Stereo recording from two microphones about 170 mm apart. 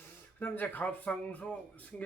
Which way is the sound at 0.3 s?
10° left (ahead or behind).